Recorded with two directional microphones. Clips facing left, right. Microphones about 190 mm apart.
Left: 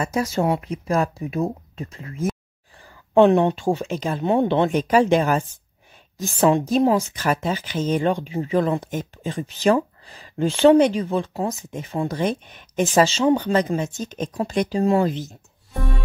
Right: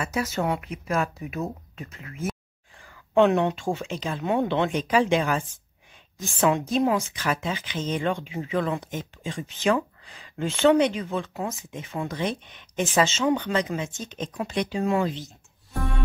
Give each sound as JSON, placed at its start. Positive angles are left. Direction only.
{"t": 0.0, "sound": "speech", "side_deg": 35}
{"t": 4.2, "sound": "speech", "side_deg": 30}
{"t": 4.7, "sound": "speech", "side_deg": 45}
{"t": 6.4, "sound": "speech", "side_deg": 30}
{"t": 8.8, "sound": "speech", "side_deg": 50}